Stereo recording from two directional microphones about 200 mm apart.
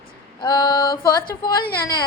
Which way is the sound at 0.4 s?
20° left (ahead or behind).